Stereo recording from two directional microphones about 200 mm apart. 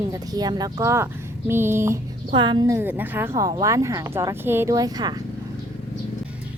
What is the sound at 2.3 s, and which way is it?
A woman's voice, 25° right (ahead or behind).